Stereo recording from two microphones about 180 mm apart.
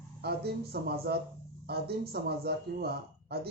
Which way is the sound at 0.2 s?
65° right (ahead or behind).